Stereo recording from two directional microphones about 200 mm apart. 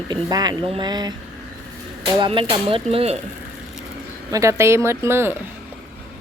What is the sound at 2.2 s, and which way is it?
Speech, 25° right (ahead or behind).